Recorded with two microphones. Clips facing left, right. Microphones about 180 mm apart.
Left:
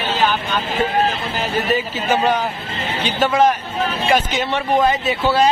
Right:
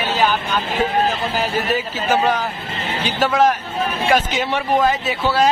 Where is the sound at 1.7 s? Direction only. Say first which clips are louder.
Left 1 dB; 5° right (ahead or behind).